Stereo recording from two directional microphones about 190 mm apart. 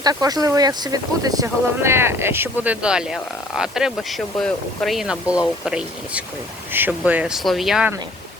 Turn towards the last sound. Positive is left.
turn(degrees=-5)  # may be behind; listen again after turning